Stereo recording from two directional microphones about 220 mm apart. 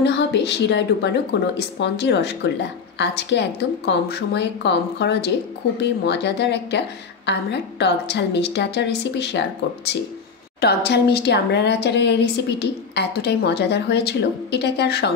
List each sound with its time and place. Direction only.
0.0 s a woman's voice: 50° left (ahead or behind)
10.6 s a woman's voice: 45° left (ahead or behind)